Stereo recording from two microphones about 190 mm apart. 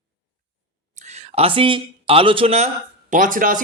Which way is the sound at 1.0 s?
35° right (ahead or behind).